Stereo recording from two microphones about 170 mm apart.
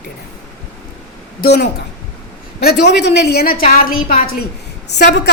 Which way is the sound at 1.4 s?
70° left (ahead or behind).